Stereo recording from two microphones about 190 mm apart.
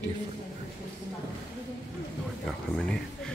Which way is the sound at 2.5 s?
5° left (ahead or behind).